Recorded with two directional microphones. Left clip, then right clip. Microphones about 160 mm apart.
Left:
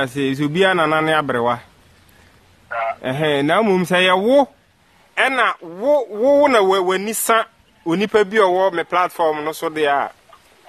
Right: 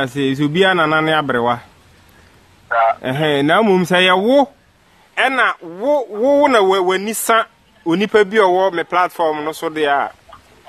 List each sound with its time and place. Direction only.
0.0 s speech: centre (ahead or behind)
2.7 s a sound: 40° right (ahead or behind)
3.0 s speech: centre (ahead or behind)